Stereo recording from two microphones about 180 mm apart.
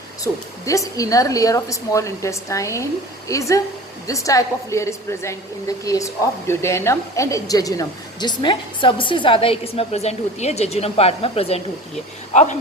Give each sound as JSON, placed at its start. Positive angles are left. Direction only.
{"t": 0.3, "sound": "a woman's voice", "side_deg": 15}